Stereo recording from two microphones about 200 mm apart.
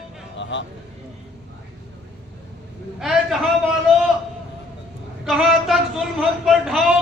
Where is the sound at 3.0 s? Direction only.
Centre (ahead or behind).